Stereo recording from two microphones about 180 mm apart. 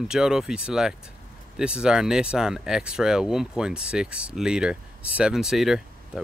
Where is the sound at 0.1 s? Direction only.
5° right (ahead or behind).